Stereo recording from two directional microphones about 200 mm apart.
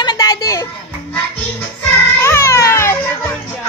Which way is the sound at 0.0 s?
20° left (ahead or behind).